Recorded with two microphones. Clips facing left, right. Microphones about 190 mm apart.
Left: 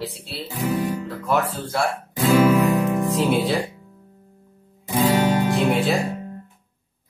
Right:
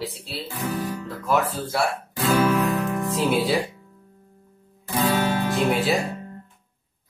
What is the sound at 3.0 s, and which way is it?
Music, centre (ahead or behind).